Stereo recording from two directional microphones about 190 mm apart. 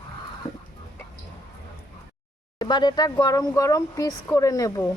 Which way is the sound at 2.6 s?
25° left (ahead or behind).